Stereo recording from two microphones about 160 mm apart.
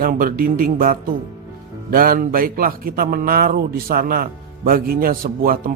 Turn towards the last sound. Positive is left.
turn(degrees=-65)  # may be behind; listen again after turning